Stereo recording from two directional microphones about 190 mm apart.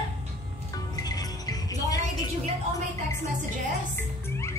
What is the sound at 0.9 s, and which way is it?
Music, 20° left (ahead or behind).